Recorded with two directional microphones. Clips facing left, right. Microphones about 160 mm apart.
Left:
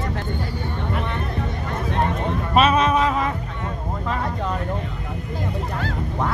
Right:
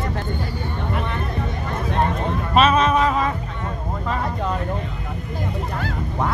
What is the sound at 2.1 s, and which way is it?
Speech, 10° left (ahead or behind).